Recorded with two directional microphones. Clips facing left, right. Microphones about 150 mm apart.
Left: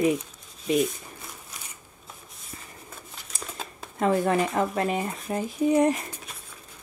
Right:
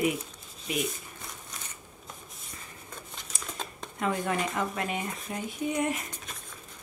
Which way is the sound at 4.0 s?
35° left (ahead or behind).